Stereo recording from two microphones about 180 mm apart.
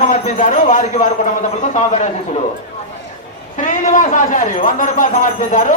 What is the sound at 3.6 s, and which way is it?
A man's voice, 45° left (ahead or behind).